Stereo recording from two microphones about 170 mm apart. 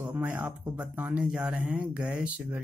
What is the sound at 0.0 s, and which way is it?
Speech, 10° right (ahead or behind).